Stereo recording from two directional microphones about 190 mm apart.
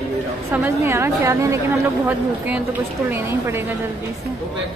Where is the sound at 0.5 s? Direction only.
15° right (ahead or behind).